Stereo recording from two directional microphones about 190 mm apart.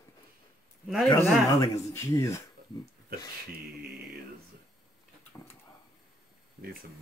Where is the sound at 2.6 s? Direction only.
50° right (ahead or behind).